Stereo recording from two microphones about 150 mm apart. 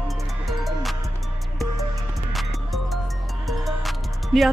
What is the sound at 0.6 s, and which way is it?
Music, centre (ahead or behind).